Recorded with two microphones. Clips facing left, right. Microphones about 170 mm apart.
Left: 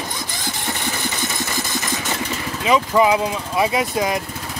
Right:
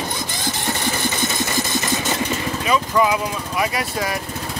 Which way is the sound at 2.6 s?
20° left (ahead or behind).